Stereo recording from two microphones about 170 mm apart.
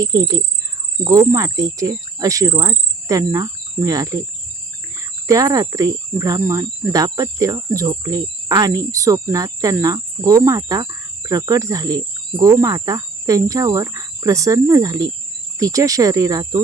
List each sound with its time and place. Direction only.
0.0 s speech: 20° right (ahead or behind)
5.2 s speech: 20° right (ahead or behind)